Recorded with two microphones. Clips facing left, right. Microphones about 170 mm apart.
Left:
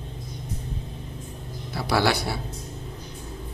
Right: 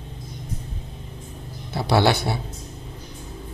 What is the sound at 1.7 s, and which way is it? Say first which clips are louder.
Speech: right 4 dB; 25° right (ahead or behind).